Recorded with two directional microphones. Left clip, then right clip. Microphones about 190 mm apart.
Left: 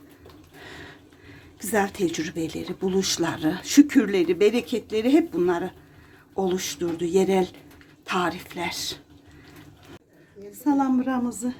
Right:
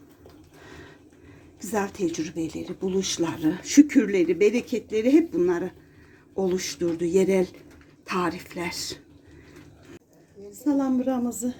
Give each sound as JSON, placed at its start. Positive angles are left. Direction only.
{"t": 1.6, "sound": "speech", "side_deg": 15}
{"t": 10.7, "sound": "a woman's voice", "side_deg": 25}
{"t": 11.1, "sound": "speech", "side_deg": 10}